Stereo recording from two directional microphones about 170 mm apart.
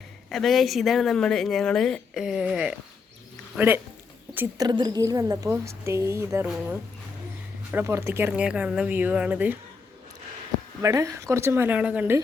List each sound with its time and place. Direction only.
0.3 s a woman's voice: centre (ahead or behind)
4.5 s a woman's voice: 25° right (ahead or behind)
10.8 s a woman's voice: 20° right (ahead or behind)